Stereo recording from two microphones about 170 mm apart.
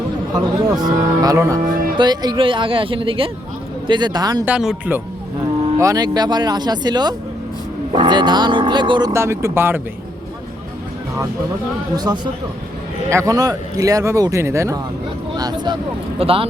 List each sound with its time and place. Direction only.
0.3 s speech: 25° right (ahead or behind)
4.4 s speech: 5° right (ahead or behind)
5.8 s speech: 20° right (ahead or behind)
11.9 s speech: 25° right (ahead or behind)